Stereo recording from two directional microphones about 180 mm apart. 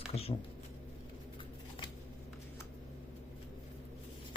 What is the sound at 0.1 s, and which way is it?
Speech, 35° left (ahead or behind).